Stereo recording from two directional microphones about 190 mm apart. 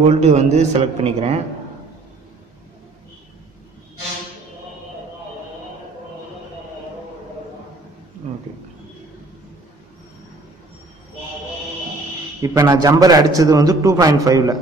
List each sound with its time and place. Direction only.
0.1 s speech: 35° right (ahead or behind)
12.4 s a man's voice: 20° right (ahead or behind)